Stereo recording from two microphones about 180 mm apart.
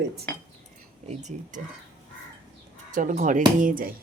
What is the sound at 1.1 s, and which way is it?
Speech, 40° right (ahead or behind).